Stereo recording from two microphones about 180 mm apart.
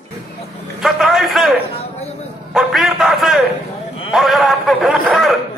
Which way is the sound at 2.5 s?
Centre (ahead or behind).